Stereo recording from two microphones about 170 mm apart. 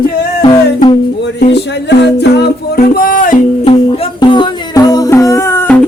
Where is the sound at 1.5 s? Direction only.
90° left; by 3.4 s 50° left (ahead or behind).